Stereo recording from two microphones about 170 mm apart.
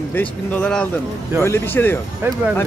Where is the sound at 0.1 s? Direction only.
10° left (ahead or behind).